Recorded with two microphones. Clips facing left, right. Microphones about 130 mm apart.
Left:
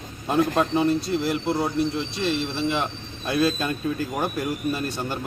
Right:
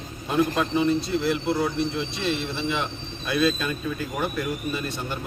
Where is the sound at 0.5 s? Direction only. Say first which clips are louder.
Left 1 dB; 40° left (ahead or behind).